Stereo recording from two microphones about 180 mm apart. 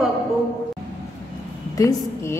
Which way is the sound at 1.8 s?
20° left (ahead or behind).